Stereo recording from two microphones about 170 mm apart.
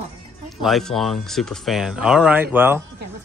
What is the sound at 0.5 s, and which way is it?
Speech, centre (ahead or behind).